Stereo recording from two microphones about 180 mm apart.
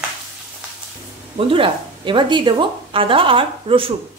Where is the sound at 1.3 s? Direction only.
30° right (ahead or behind).